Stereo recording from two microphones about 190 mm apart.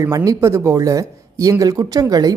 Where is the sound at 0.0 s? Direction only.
15° right (ahead or behind).